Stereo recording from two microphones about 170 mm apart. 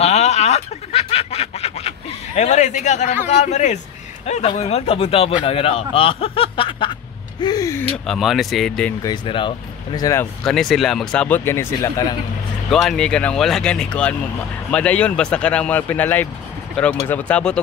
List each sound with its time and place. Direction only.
0.0 s snicker: 40° left (ahead or behind)
3.3 s speech: 45° left (ahead or behind); by 7.8 s 20° left (ahead or behind)
8.1 s speech: centre (ahead or behind)
9.0 s speech: 25° left (ahead or behind)
10.4 s speech: centre (ahead or behind); by 12.2 s 20° left (ahead or behind)
12.8 s speech: 5° left (ahead or behind)